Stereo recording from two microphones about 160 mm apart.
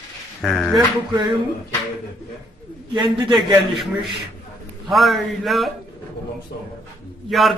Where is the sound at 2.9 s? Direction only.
30° right (ahead or behind).